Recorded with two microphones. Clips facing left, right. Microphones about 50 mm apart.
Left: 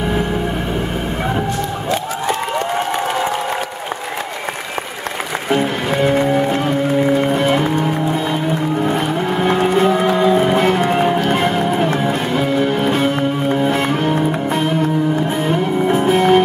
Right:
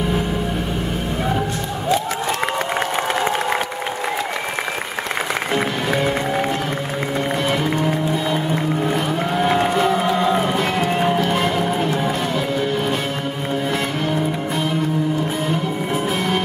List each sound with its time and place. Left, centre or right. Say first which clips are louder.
7.3 s music: left 5 dB; left
10.5 s music: left 5 dB; left
11.2 s music: left 3 dB; left
15.9 s music: left 9 dB; left